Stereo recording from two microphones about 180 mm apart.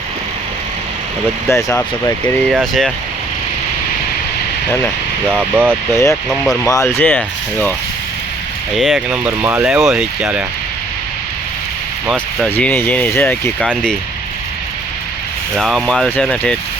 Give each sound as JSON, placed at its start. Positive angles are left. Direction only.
{"t": 1.5, "sound": "speech", "side_deg": 15}
{"t": 2.5, "sound": "speech", "side_deg": 0}
{"t": 5.3, "sound": "speech", "side_deg": -10}
{"t": 5.9, "sound": "speech", "side_deg": 15}
{"t": 6.2, "sound": "speech", "side_deg": 5}
{"t": 6.5, "sound": "speech", "side_deg": 20}
{"t": 8.7, "sound": "speech", "side_deg": 0}
{"t": 12.1, "sound": "speech", "side_deg": 10}
{"t": 15.5, "sound": "speech", "side_deg": 0}